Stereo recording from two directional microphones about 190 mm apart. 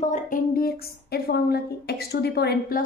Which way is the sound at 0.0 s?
40° left (ahead or behind).